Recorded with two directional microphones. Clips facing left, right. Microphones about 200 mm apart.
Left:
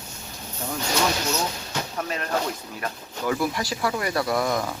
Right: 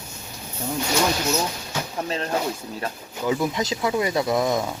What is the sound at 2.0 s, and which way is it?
Speech, 30° right (ahead or behind).